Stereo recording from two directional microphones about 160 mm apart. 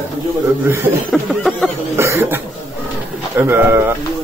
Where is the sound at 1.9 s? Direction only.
15° right (ahead or behind).